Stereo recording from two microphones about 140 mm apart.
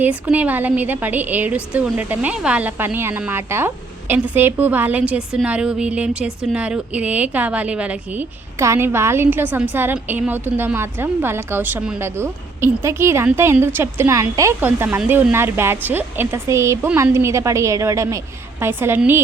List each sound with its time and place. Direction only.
0.0 s speech: 10° right (ahead or behind)